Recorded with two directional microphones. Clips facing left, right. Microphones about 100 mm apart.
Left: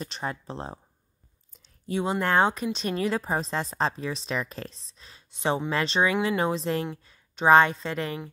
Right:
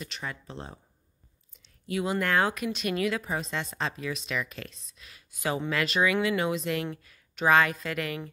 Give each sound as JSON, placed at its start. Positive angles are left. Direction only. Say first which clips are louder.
{"t": 0.0, "sound": "a woman's voice", "louder": "left 5 dB", "side_deg": 35}